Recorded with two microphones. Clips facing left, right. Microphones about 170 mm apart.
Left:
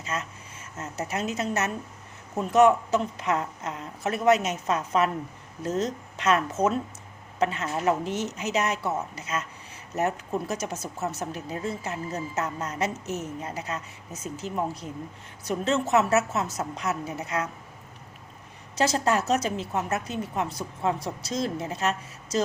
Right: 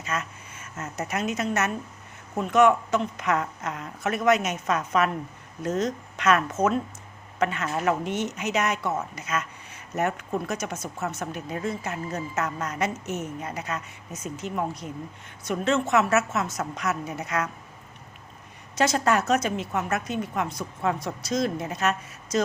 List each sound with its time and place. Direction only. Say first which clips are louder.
0.0 s a woman's voice: right 1 dB; 30° left (ahead or behind)
18.8 s a woman's voice: right 1 dB; 30° left (ahead or behind)